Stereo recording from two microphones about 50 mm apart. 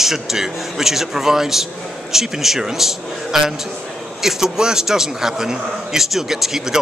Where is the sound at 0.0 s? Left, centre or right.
Centre.